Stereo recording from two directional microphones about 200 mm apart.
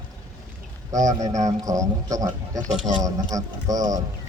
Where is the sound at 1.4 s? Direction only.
15° right (ahead or behind).